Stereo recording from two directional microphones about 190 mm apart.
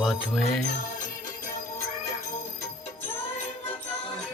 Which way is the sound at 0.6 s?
45° left (ahead or behind).